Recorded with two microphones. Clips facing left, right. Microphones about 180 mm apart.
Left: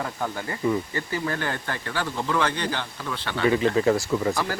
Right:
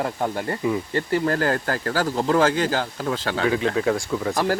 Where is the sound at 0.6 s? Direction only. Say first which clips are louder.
Even; 5° right (ahead or behind).